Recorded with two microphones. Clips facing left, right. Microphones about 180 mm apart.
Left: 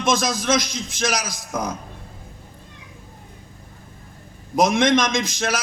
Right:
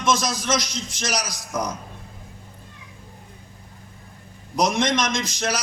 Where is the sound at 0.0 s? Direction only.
55° left (ahead or behind).